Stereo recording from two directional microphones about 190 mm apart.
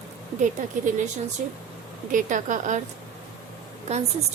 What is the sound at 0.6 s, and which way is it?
Speech, 40° right (ahead or behind).